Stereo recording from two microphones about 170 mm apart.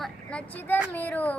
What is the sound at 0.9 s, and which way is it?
Child singing, 10° left (ahead or behind).